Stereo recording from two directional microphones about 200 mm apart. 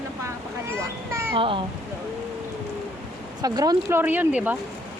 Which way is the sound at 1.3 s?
25° right (ahead or behind).